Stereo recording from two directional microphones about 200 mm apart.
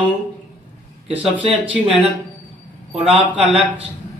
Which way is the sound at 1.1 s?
5° right (ahead or behind).